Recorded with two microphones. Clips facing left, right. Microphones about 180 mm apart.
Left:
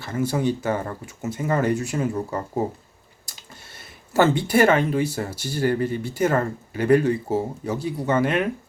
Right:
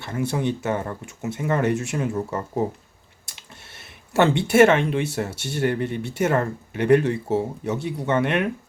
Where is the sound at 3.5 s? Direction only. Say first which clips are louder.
Left 1 dB; centre (ahead or behind).